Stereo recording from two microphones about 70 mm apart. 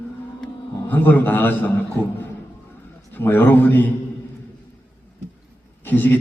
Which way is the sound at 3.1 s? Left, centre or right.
Left.